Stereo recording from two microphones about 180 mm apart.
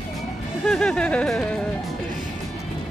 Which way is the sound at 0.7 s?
5° left (ahead or behind).